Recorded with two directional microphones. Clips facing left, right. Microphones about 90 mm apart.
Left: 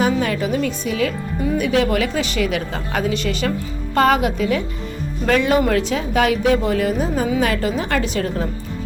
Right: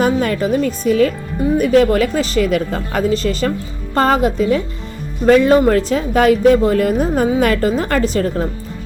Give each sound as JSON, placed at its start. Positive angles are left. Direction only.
{"t": 0.0, "sound": "a woman's voice", "side_deg": -45}